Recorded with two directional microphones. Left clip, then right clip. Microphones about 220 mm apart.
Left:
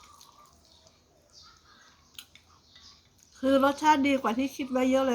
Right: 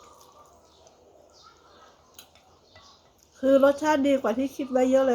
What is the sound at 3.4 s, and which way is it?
Speech, 15° left (ahead or behind).